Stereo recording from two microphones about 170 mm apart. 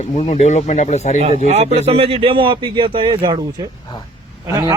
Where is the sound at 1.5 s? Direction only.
40° right (ahead or behind).